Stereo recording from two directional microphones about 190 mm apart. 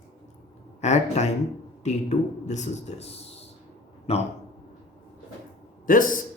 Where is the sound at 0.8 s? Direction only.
35° left (ahead or behind).